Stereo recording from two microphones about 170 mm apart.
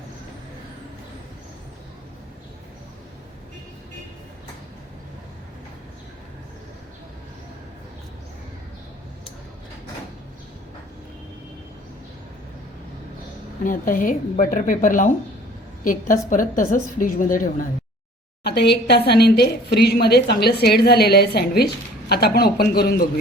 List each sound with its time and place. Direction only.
13.7 s a woman's voice: 55° left (ahead or behind)
18.4 s a woman's voice: 75° left (ahead or behind)